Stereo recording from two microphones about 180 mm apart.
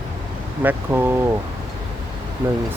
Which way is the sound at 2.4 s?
20° right (ahead or behind).